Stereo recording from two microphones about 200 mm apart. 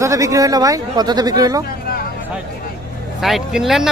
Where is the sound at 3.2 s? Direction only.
Centre (ahead or behind).